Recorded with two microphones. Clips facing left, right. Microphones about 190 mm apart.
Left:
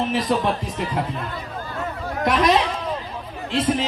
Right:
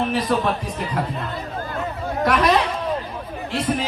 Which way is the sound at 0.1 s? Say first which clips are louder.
Even; 20° left (ahead or behind).